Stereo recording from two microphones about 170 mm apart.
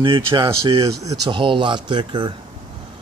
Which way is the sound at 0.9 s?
20° right (ahead or behind).